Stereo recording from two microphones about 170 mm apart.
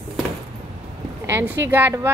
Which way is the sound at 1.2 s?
10° right (ahead or behind).